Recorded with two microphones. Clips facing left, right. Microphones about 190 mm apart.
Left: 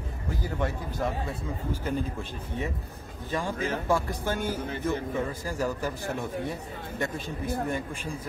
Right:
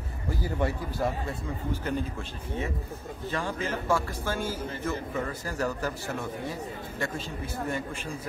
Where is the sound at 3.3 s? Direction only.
15° left (ahead or behind).